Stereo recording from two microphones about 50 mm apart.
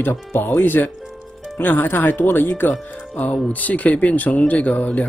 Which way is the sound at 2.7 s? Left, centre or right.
Left.